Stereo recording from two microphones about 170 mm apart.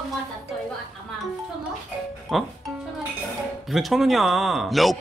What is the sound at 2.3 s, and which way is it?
Speech, centre (ahead or behind).